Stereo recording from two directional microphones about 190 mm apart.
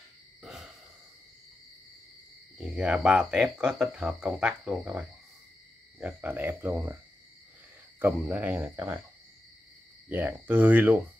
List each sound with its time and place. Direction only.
0.4 s owl: centre (ahead or behind)
2.5 s speech: 5° right (ahead or behind)
8.0 s speech: 10° right (ahead or behind)
10.0 s speech: 10° right (ahead or behind)